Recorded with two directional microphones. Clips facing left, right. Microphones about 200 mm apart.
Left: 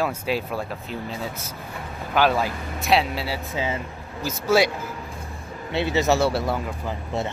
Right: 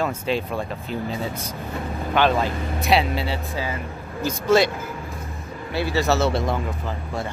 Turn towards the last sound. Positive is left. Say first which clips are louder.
# right 1 dB
turn(degrees=5)  # may be behind; listen again after turning